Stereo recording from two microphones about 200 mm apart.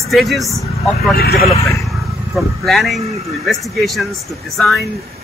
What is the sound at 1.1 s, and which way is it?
Speech, 50° left (ahead or behind).